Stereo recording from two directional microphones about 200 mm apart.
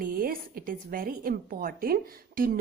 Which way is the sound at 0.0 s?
45° right (ahead or behind).